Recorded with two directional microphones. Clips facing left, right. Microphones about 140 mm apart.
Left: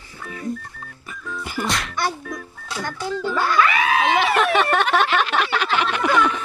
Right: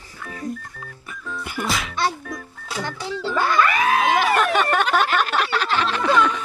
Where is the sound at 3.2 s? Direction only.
5° left (ahead or behind).